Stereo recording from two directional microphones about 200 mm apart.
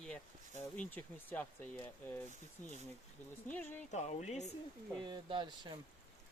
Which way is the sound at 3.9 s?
35° left (ahead or behind).